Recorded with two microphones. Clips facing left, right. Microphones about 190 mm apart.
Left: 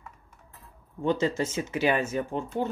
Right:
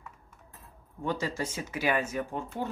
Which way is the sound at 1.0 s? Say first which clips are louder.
Left 6 dB; 25° left (ahead or behind).